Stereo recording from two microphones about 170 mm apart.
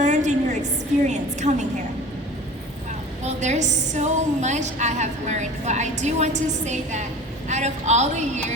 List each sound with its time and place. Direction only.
0.0 s a sound: 45° right (ahead or behind)
1.0 s a woman's voice: 45° right (ahead or behind)
3.2 s a woman's voice: 45° right (ahead or behind)